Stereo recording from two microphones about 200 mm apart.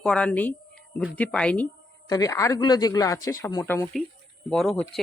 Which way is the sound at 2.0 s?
20° left (ahead or behind).